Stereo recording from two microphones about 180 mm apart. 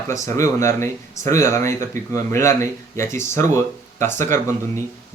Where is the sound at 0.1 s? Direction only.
15° left (ahead or behind).